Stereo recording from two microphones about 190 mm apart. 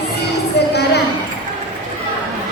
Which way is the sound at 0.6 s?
60° left (ahead or behind).